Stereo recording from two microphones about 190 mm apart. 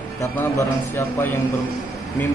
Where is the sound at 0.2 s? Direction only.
15° left (ahead or behind).